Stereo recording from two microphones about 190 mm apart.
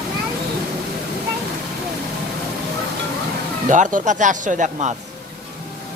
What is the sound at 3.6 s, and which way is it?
Speech, 40° right (ahead or behind).